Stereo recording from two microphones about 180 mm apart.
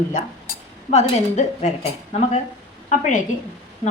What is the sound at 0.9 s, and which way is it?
Speech, 40° left (ahead or behind).